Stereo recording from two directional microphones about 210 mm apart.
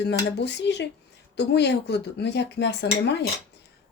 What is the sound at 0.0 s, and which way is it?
A woman's voice, 55° left (ahead or behind).